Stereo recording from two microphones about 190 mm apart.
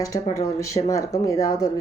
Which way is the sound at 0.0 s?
15° left (ahead or behind).